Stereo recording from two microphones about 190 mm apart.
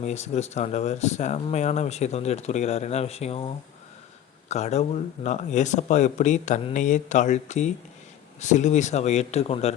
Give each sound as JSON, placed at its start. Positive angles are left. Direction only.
{"t": 0.0, "sound": "speech", "side_deg": 35}